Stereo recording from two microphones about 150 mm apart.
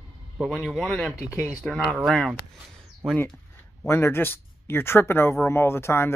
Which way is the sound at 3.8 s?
15° left (ahead or behind).